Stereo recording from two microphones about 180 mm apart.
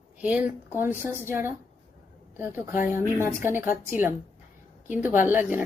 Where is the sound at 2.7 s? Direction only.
40° left (ahead or behind).